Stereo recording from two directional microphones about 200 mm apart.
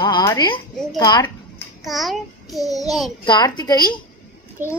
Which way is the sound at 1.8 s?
Centre (ahead or behind).